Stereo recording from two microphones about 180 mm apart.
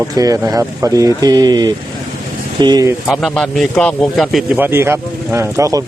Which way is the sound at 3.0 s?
Centre (ahead or behind).